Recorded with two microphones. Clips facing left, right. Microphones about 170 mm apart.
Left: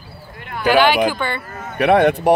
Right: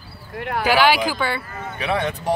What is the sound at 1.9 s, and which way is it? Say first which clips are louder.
Speech: left 9 dB; 65° left (ahead or behind).